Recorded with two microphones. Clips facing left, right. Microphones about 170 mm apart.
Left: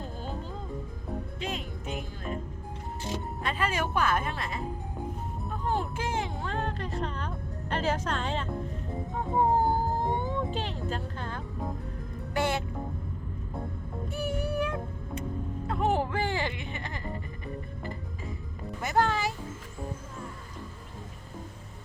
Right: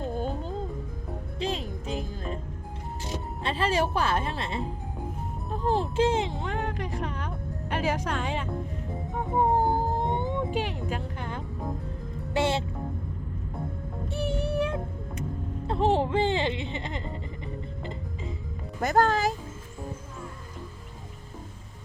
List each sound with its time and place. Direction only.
1.4 s music: 30° right (ahead or behind)
3.4 s speech: 30° right (ahead or behind); by 8.4 s 10° right (ahead or behind)
9.1 s music: 20° right (ahead or behind)
14.1 s music: 25° right (ahead or behind)
18.8 s speech: 40° right (ahead or behind)